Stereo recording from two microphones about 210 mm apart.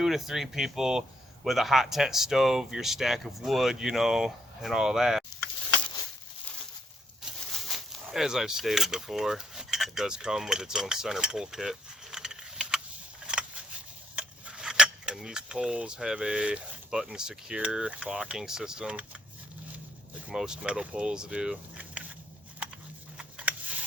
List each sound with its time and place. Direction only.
0.0 s speech: centre (ahead or behind)
7.3 s speech: centre (ahead or behind)
14.2 s cutlery: 5° right (ahead or behind)
20.3 s speech: 5° right (ahead or behind)
23.1 s a sound: 5° right (ahead or behind)